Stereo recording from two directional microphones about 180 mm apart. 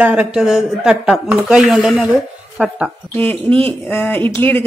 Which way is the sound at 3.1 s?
10° left (ahead or behind).